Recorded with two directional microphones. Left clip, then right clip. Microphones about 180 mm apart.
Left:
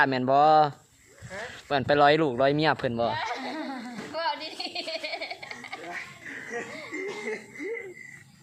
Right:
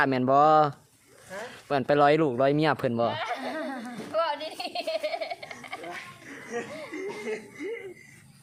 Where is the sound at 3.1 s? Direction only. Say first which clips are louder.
Even; 45° right (ahead or behind).